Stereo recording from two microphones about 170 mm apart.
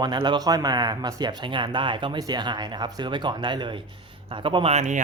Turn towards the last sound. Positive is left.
turn(degrees=-45)  # may be behind; listen again after turning